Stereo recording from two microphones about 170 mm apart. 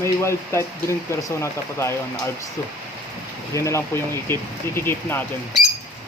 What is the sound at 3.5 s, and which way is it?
Speech, 15° left (ahead or behind).